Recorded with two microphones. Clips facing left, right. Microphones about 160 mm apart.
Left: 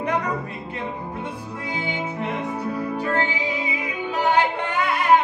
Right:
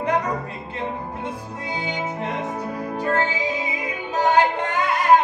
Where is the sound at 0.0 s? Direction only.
30° right (ahead or behind).